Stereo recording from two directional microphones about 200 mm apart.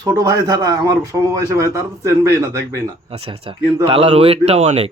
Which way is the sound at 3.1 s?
30° right (ahead or behind).